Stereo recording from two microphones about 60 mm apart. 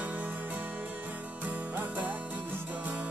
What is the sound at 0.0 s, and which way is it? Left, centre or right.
Music, right.